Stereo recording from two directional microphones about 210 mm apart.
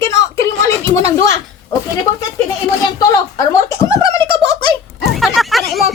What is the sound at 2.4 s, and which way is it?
Speech, 15° left (ahead or behind).